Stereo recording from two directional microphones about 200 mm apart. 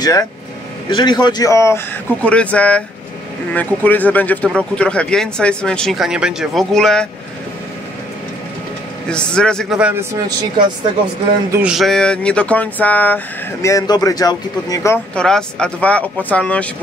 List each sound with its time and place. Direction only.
0.0 s speech: 15° left (ahead or behind)
9.1 s speech: 5° left (ahead or behind)
11.5 s speech: 5° right (ahead or behind); by 15.0 s 15° left (ahead or behind)
15.1 s speech: 5° left (ahead or behind)